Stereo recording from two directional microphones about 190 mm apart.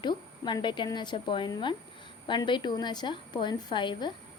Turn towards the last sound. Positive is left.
turn(degrees=25)  # may be behind; listen again after turning